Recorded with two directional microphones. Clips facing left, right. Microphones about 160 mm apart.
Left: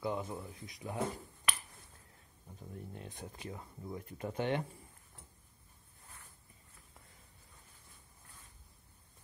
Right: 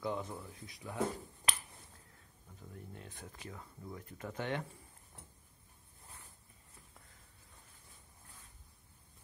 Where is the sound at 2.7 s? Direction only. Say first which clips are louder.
Left 3 dB; 20° left (ahead or behind).